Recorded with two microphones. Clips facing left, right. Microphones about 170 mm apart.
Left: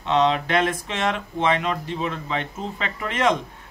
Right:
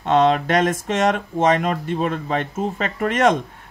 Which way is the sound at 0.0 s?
50° right (ahead or behind).